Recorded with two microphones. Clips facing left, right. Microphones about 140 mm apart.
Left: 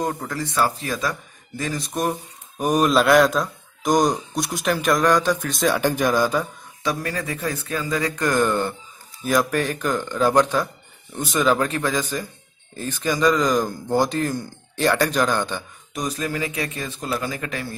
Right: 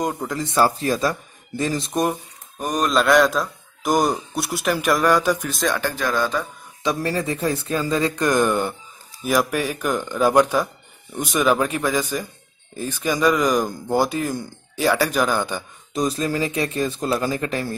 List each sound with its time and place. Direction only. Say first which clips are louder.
0.0 s speech: right 1 dB; 15° right (ahead or behind)
0.6 s speech: right 5 dB; 35° right (ahead or behind)
2.6 s speech: left 2 dB; 5° left (ahead or behind); by 5.5 s 10° right (ahead or behind)
5.5 s speech: left 2 dB; centre (ahead or behind)
5.8 s speech: left 3 dB; 15° left (ahead or behind)
6.8 s speech: right 3 dB; 25° right (ahead or behind)
15.9 s speech: right 4 dB; 30° right (ahead or behind)